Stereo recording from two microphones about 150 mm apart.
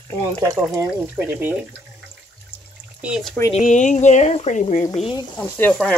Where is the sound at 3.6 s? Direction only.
55° left (ahead or behind).